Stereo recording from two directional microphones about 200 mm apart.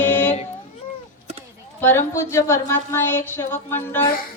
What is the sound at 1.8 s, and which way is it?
A woman's voice, 10° left (ahead or behind).